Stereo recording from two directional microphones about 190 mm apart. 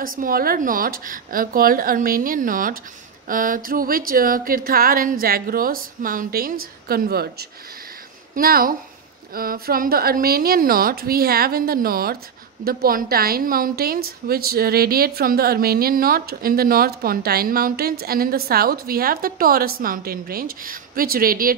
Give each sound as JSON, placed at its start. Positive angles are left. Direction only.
{"t": 0.0, "sound": "a woman's voice", "side_deg": -50}